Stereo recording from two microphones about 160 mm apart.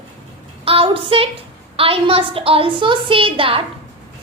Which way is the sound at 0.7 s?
35° right (ahead or behind).